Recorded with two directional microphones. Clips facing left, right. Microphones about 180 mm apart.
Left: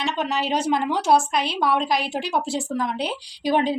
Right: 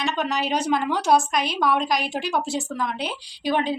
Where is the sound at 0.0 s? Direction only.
25° left (ahead or behind).